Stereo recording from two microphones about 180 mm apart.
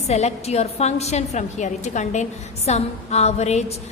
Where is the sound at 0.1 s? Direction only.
35° left (ahead or behind).